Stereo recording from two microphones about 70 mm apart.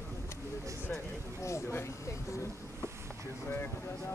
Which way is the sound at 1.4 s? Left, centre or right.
Left.